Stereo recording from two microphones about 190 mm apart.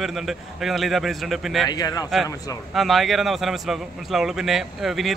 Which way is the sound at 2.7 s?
Centre (ahead or behind).